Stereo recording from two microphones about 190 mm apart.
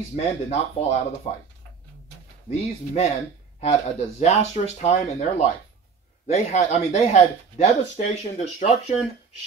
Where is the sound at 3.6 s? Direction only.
35° left (ahead or behind).